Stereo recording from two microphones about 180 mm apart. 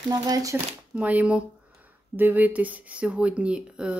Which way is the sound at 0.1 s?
20° right (ahead or behind).